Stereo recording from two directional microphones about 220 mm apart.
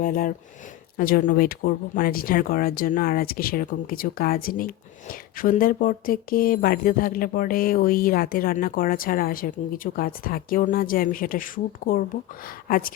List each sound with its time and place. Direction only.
0.0 s speech: 40° left (ahead or behind)